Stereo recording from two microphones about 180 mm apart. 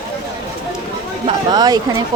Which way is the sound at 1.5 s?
20° right (ahead or behind).